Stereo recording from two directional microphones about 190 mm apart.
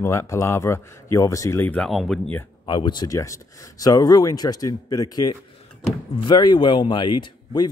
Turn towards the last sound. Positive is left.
turn(degrees=25)  # may be behind; listen again after turning